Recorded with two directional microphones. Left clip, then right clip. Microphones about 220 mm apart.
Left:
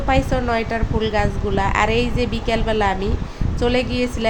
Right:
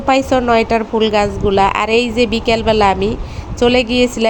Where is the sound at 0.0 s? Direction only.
20° right (ahead or behind).